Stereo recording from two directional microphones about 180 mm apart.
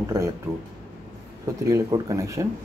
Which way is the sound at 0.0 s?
15° right (ahead or behind).